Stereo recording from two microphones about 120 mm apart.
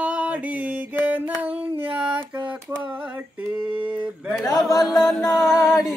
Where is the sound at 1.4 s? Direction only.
15° right (ahead or behind).